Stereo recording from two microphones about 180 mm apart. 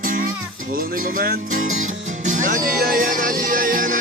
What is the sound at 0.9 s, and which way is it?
Music, 50° right (ahead or behind).